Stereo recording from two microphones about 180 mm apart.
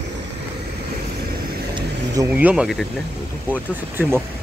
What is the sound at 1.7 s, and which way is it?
Speech, 20° right (ahead or behind).